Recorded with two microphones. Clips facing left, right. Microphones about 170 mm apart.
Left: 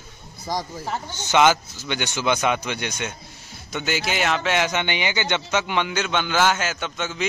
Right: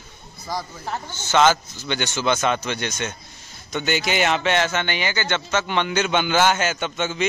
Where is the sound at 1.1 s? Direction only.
15° left (ahead or behind).